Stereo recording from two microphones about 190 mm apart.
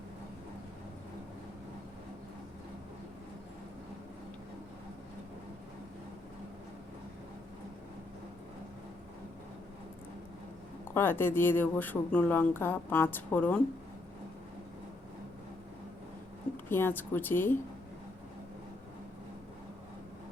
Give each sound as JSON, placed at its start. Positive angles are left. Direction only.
{"t": 10.9, "sound": "speech", "side_deg": 10}
{"t": 16.6, "sound": "speech", "side_deg": 10}